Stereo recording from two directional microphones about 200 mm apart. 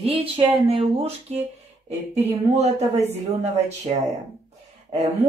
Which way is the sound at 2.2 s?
35° right (ahead or behind).